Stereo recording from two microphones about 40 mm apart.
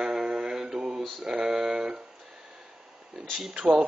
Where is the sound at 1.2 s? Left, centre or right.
Centre.